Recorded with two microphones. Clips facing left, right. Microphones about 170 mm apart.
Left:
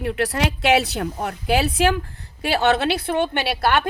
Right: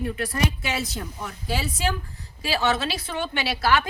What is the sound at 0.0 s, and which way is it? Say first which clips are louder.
A woman's voice: left 4 dB; 75° left (ahead or behind).